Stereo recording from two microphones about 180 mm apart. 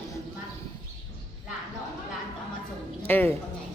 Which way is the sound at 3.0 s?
10° left (ahead or behind).